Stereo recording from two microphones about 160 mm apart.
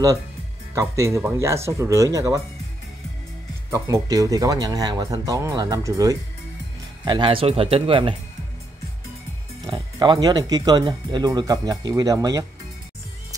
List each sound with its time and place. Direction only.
0.7 s speech: 20° right (ahead or behind)
3.7 s speech: 20° right (ahead or behind)
7.1 s speech: 30° right (ahead or behind)
9.7 s speech: 30° right (ahead or behind)